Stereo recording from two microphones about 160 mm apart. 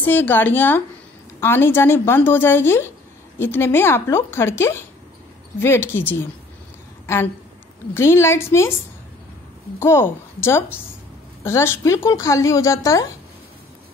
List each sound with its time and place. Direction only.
0.0 s a woman's voice: 10° left (ahead or behind)
7.9 s a woman's voice: 15° left (ahead or behind)
9.8 s a woman's voice: 15° left (ahead or behind)